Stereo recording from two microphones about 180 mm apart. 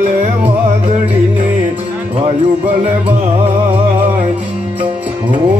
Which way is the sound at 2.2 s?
35° right (ahead or behind).